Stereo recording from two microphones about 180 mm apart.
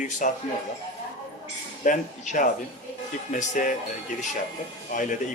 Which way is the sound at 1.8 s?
45° left (ahead or behind).